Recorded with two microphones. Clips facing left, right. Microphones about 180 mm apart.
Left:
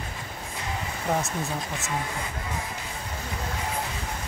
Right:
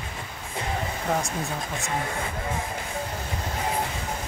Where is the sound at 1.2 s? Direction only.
Centre (ahead or behind).